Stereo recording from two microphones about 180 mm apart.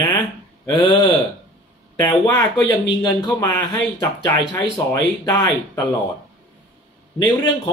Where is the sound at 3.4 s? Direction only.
20° left (ahead or behind).